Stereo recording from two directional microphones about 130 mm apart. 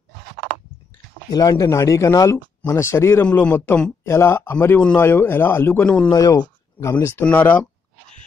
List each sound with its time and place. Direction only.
1.3 s speech: 30° left (ahead or behind)
3.3 s speech: 10° left (ahead or behind)
4.0 s speech: 20° left (ahead or behind)
6.0 s speech: 30° left (ahead or behind)